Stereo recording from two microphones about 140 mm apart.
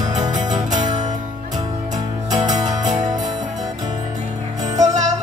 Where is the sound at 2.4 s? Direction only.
30° right (ahead or behind).